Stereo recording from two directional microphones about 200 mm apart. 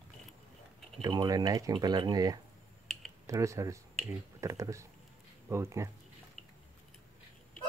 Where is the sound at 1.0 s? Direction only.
20° right (ahead or behind).